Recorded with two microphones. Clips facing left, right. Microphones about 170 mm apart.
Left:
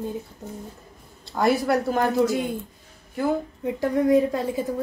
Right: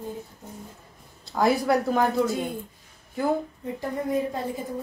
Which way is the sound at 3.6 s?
90° left.